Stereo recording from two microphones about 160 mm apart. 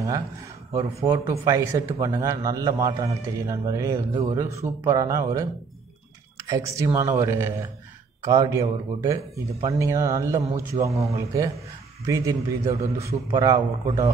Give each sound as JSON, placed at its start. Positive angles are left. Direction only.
{"t": 0.7, "sound": "speech", "side_deg": -20}